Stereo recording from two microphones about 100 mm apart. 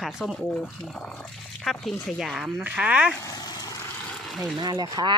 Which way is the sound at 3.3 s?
40° left (ahead or behind).